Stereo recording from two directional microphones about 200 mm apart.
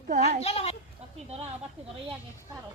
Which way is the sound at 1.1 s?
30° right (ahead or behind).